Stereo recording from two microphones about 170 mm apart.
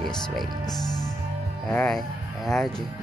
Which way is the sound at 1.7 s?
5° left (ahead or behind).